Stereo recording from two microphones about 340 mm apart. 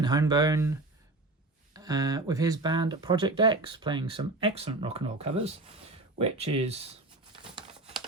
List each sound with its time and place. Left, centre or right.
0.0 s speech: centre